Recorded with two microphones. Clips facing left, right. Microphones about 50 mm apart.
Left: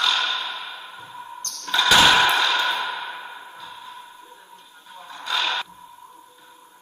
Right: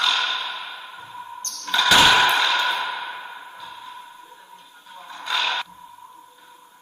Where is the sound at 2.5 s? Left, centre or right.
Right.